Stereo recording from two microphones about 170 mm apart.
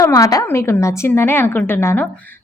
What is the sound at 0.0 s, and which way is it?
A woman's voice, 20° left (ahead or behind).